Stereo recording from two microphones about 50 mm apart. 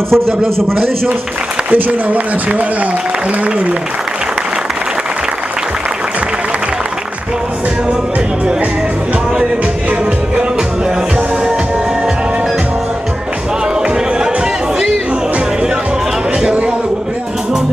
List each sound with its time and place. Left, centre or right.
0.1 s a man's voice: centre
1.7 s a man's voice: right